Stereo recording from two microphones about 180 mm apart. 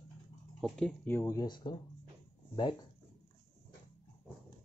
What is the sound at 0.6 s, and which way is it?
Speech, 5° left (ahead or behind).